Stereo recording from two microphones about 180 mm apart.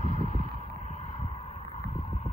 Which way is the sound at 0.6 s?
35° left (ahead or behind).